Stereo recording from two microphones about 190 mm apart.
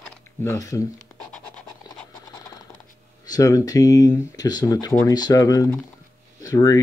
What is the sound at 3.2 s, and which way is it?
Speech, 20° left (ahead or behind).